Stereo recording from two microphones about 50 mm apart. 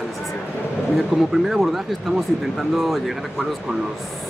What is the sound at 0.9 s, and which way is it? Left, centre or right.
Speech, centre.